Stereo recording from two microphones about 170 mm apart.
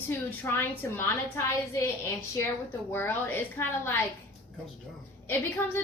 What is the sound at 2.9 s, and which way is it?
A woman's voice, 10° left (ahead or behind).